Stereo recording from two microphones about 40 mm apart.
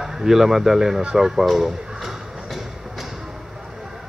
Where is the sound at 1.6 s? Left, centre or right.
Centre.